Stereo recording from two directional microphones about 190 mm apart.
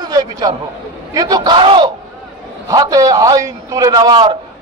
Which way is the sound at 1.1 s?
20° right (ahead or behind).